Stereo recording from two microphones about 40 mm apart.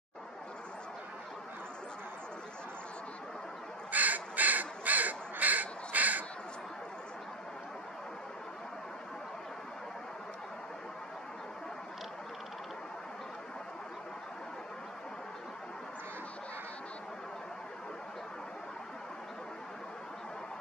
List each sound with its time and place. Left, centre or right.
3.9 s crow: right